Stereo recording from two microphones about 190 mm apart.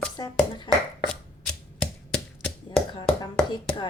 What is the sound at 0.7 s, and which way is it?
Speech, 25° left (ahead or behind).